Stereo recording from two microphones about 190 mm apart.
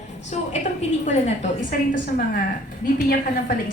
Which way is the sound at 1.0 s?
35° left (ahead or behind).